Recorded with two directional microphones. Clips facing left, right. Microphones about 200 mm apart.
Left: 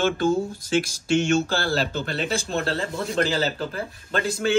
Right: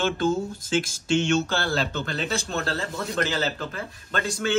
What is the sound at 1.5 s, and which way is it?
Speech, 35° left (ahead or behind).